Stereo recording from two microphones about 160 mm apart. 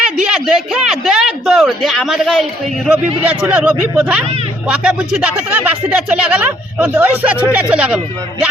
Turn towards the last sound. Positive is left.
turn(degrees=-5)  # may be behind; listen again after turning